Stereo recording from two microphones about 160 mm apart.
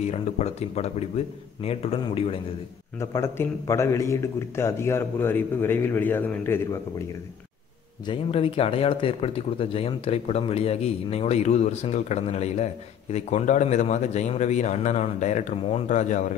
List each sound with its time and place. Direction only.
0.0 s speech: 40° left (ahead or behind)
3.0 s a man's voice: 15° left (ahead or behind)
8.1 s speech: 35° left (ahead or behind)